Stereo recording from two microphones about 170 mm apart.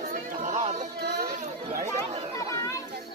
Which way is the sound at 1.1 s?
60° right (ahead or behind).